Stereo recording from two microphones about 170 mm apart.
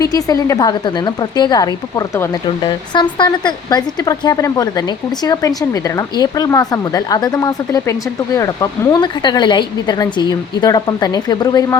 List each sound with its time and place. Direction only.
0.0 s speech: 20° left (ahead or behind)